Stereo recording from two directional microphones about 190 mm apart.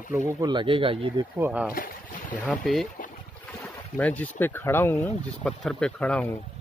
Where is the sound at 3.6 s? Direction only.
10° left (ahead or behind).